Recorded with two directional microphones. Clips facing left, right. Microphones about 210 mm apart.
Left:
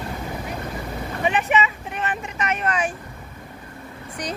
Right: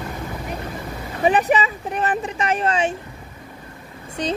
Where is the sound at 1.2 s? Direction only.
35° right (ahead or behind).